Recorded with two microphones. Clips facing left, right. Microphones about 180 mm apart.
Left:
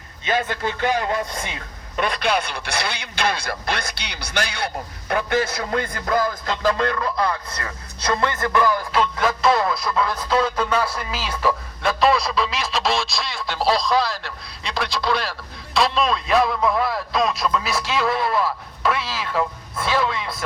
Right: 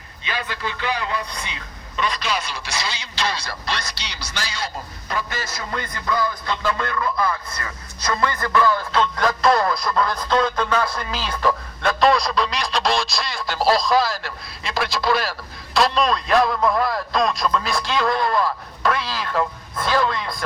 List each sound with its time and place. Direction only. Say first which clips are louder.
0.3 s a man's voice: left 5 dB; 50° left (ahead or behind); by 20.4 s 5° left (ahead or behind)